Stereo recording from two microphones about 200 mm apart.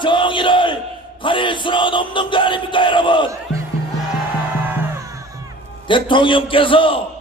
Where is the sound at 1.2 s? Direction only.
25° left (ahead or behind).